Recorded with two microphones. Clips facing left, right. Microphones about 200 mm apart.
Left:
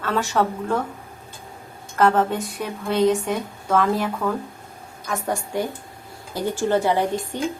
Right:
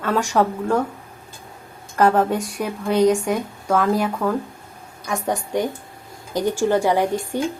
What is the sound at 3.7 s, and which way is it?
A woman's voice, 10° right (ahead or behind).